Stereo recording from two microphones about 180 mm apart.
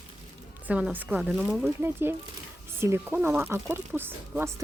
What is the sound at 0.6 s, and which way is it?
Speech, 10° right (ahead or behind).